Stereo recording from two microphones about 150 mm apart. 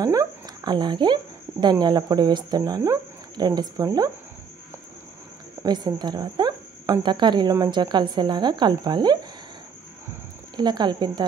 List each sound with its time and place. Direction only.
0.0 s speech: 25° right (ahead or behind)
5.6 s speech: 30° right (ahead or behind)
10.5 s speech: 30° right (ahead or behind)